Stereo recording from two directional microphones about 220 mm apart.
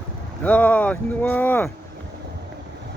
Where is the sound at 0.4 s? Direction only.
5° left (ahead or behind).